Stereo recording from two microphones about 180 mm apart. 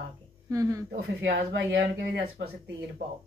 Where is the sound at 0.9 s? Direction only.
70° right (ahead or behind).